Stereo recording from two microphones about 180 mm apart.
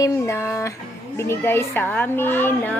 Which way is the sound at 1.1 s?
15° left (ahead or behind).